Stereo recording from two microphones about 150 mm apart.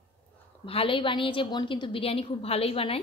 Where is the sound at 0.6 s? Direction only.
35° left (ahead or behind).